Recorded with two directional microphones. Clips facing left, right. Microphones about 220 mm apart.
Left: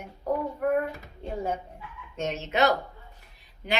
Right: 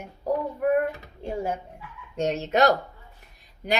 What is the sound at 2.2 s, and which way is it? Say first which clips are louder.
Speech: right 4 dB; 35° right (ahead or behind).